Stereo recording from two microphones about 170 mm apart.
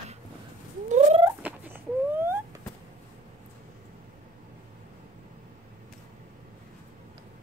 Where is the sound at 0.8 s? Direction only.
45° right (ahead or behind).